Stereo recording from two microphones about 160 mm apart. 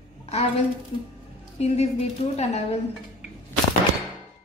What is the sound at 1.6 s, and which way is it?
A woman's voice, 40° left (ahead or behind).